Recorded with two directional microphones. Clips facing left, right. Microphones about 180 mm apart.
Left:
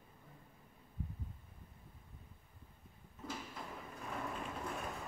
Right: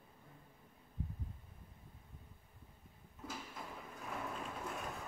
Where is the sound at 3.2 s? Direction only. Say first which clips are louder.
Left 2 dB; 5° right (ahead or behind).